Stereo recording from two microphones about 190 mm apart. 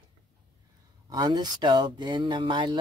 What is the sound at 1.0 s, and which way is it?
Speech, 20° right (ahead or behind).